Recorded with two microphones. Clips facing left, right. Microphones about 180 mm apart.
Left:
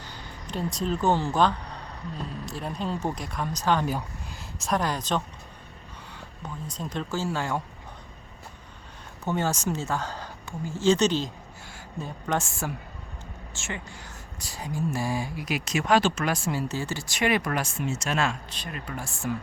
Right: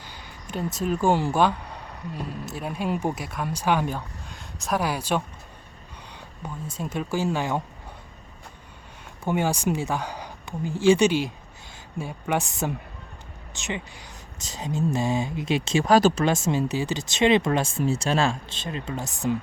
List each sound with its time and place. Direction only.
0.2 s speech: 5° right (ahead or behind)
3.8 s speech: 5° left (ahead or behind)
6.4 s speech: 10° right (ahead or behind)
9.2 s speech: 15° right (ahead or behind); by 16.2 s 40° right (ahead or behind)
16.2 s speech: 20° right (ahead or behind)